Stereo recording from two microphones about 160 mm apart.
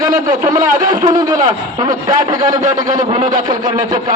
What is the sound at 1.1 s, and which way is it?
Speech, 25° right (ahead or behind).